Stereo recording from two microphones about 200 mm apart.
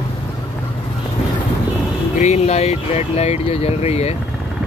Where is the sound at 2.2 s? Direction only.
35° left (ahead or behind).